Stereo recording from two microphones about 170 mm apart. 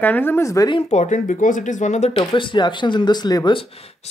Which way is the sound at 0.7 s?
40° left (ahead or behind).